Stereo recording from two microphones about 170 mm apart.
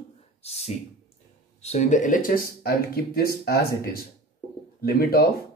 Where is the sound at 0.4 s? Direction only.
40° left (ahead or behind).